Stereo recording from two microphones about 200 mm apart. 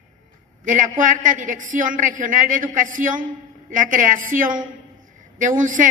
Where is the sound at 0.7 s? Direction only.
40° right (ahead or behind).